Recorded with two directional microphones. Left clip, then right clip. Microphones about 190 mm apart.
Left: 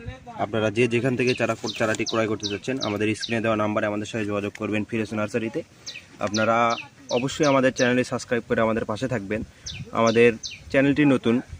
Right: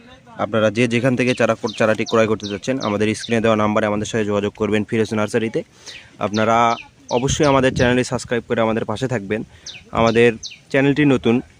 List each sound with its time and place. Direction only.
0.3 s speech: 50° right (ahead or behind)